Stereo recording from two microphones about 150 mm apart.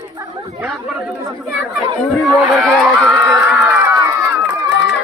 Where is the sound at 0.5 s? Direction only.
5° right (ahead or behind).